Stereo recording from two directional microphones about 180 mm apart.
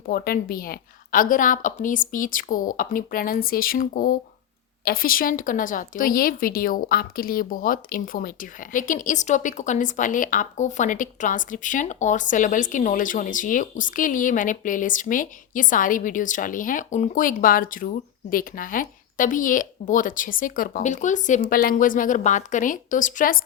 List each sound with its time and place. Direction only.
0.1 s speech: 55° left (ahead or behind)